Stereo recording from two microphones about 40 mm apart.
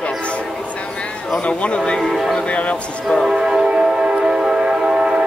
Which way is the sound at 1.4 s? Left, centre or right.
Left.